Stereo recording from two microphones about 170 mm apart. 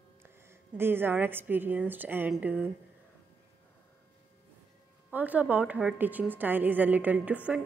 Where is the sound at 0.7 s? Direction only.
15° right (ahead or behind).